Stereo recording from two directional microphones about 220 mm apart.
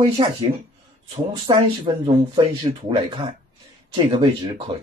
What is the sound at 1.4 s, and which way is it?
Speech, 20° right (ahead or behind).